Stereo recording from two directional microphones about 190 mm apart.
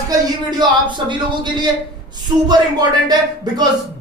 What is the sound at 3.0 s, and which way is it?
Speech, 20° right (ahead or behind).